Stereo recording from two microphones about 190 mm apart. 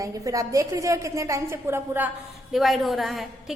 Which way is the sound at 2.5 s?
Centre (ahead or behind).